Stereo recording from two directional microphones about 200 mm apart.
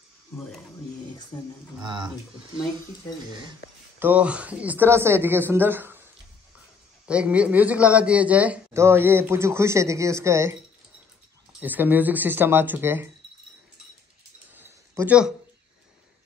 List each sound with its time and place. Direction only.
1.8 s speech: 20° right (ahead or behind)
4.0 s speech: 5° right (ahead or behind)
7.1 s speech: 5° right (ahead or behind)
11.6 s speech: 10° right (ahead or behind)
14.5 s a sound: 10° right (ahead or behind)